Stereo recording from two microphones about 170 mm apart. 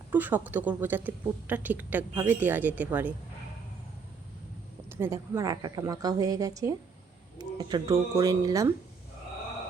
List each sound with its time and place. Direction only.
0.1 s a woman's voice: 10° right (ahead or behind)
4.9 s a woman's voice: 15° right (ahead or behind)